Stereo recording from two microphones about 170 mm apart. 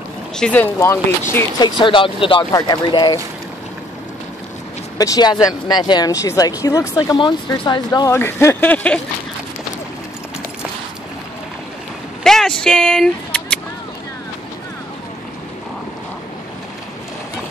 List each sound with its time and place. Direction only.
0.4 s speech: 10° left (ahead or behind)
1.6 s speech: 30° left (ahead or behind)
4.9 s speech: 20° left (ahead or behind)
12.2 s a sound: 5° left (ahead or behind)